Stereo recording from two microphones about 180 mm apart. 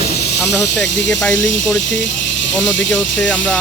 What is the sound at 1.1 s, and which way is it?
Speech, 5° left (ahead or behind).